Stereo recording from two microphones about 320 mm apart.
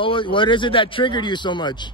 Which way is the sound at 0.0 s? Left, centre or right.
Centre.